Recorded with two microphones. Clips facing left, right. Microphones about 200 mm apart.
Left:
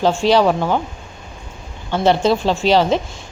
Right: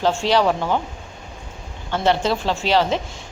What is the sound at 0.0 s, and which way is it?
Speech, 15° left (ahead or behind).